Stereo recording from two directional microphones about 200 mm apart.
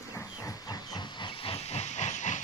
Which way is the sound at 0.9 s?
25° left (ahead or behind).